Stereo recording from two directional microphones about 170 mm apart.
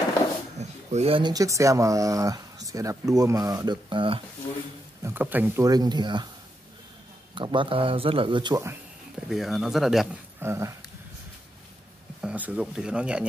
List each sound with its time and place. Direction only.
0.6 s speech: 40° right (ahead or behind)
5.0 s speech: 10° right (ahead or behind)
5.7 s speech: 25° right (ahead or behind)
7.3 s speech: 30° right (ahead or behind)
9.3 s speech: centre (ahead or behind)
10.4 s speech: 15° right (ahead or behind)
12.2 s speech: 10° right (ahead or behind)